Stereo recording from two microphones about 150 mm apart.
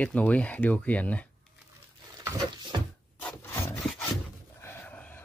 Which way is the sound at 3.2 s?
15° left (ahead or behind).